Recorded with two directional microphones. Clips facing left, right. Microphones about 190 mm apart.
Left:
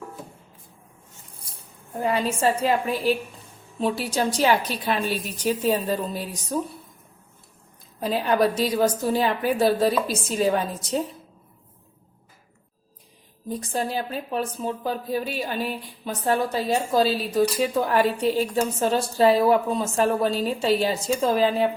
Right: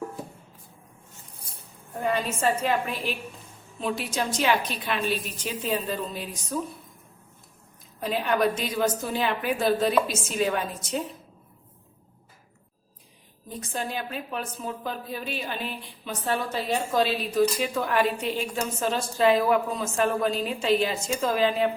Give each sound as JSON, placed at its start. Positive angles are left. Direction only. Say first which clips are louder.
{"t": 2.0, "sound": "a woman's voice", "louder": "left 3 dB", "side_deg": 30}
{"t": 8.0, "sound": "a woman's voice", "louder": "left 3 dB", "side_deg": 35}
{"t": 13.6, "sound": "a woman's voice", "louder": "left 4 dB", "side_deg": 35}